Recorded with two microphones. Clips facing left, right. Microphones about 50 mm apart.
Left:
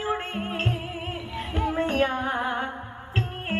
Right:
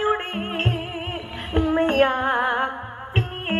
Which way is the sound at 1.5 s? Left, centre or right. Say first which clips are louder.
Right 6 dB; right.